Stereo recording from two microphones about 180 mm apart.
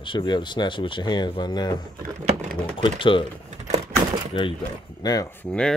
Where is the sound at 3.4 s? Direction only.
40° right (ahead or behind).